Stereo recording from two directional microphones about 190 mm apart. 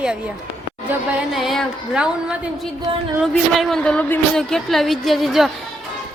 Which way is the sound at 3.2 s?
Centre (ahead or behind).